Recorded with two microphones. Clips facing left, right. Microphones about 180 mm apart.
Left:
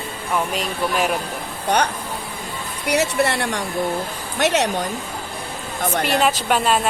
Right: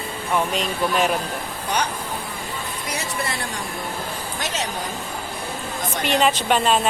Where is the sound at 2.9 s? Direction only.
70° left (ahead or behind).